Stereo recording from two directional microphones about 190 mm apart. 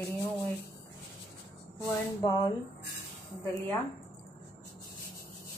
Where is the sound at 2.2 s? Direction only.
20° left (ahead or behind).